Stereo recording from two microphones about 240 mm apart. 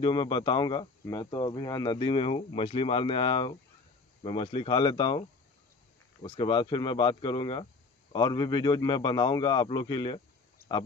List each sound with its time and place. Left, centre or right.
0.0 s speech: centre
6.2 s speech: left
10.6 s a sound: left